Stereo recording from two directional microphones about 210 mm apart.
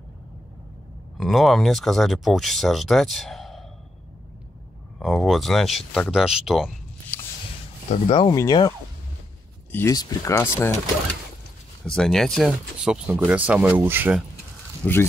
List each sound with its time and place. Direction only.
1.1 s speech: centre (ahead or behind)
4.9 s speech: centre (ahead or behind)
7.9 s speech: 25° left (ahead or behind)
11.8 s speech: 5° left (ahead or behind)
14.8 s speech: 5° left (ahead or behind)